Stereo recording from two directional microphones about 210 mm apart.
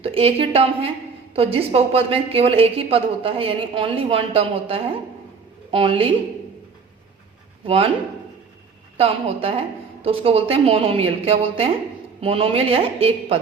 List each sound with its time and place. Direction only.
0.0 s a woman's voice: 30° right (ahead or behind)
7.6 s a man's voice: 25° right (ahead or behind)
9.0 s a woman's voice: 25° right (ahead or behind)